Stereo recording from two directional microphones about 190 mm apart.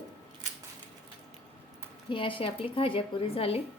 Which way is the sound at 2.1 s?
25° left (ahead or behind).